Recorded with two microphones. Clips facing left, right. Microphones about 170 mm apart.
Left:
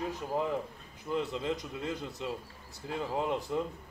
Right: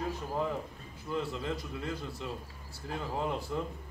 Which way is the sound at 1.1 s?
20° left (ahead or behind).